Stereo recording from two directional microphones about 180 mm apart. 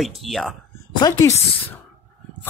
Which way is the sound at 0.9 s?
20° left (ahead or behind).